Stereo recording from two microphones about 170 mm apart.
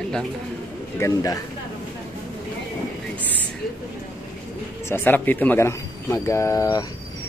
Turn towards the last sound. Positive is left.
turn(degrees=20)  # may be behind; listen again after turning